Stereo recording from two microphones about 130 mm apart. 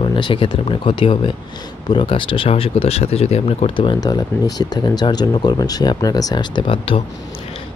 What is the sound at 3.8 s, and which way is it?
Speech, 35° left (ahead or behind).